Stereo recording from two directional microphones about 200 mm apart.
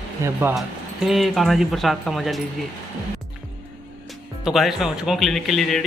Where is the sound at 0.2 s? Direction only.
10° right (ahead or behind).